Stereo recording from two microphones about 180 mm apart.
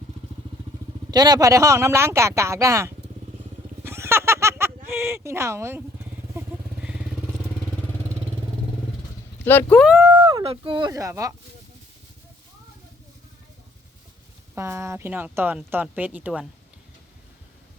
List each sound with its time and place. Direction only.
1.1 s speech: 20° right (ahead or behind)
3.8 s a sound: 15° right (ahead or behind)
4.9 s speech: 15° right (ahead or behind)
6.3 s vehicle: 15° right (ahead or behind)
9.5 s speech: 10° left (ahead or behind)
10.0 s speech: 25° right (ahead or behind)
14.5 s speech: 15° right (ahead or behind)